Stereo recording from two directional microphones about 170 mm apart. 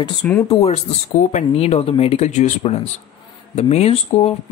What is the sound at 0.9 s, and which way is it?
Speech, 35° left (ahead or behind).